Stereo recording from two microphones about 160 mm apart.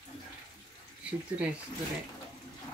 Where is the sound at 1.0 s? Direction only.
5° right (ahead or behind).